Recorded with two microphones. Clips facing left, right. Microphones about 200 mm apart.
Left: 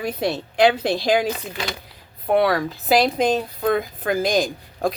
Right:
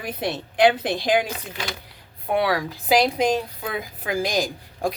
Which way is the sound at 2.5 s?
15° right (ahead or behind).